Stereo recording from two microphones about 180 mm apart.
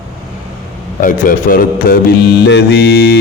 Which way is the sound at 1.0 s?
50° left (ahead or behind).